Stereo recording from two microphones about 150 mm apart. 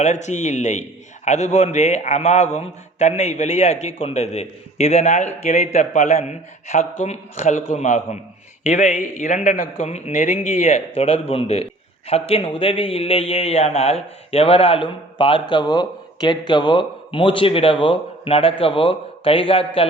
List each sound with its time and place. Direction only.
0.0 s a man's voice: 50° left (ahead or behind)